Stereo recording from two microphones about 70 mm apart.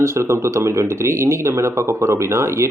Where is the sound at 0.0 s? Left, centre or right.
Right.